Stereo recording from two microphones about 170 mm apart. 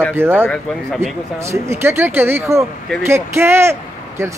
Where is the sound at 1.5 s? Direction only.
15° right (ahead or behind).